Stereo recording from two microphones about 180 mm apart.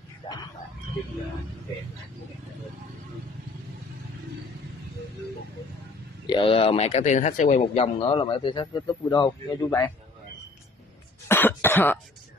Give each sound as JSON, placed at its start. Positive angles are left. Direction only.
{"t": 6.2, "sound": "speech", "side_deg": 25}
{"t": 7.6, "sound": "speech", "side_deg": 30}
{"t": 11.2, "sound": "cough", "side_deg": 10}